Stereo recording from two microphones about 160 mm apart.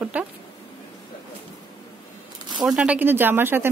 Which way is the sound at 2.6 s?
5° right (ahead or behind).